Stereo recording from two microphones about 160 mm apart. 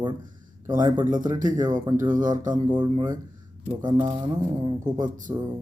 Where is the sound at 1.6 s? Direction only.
25° right (ahead or behind).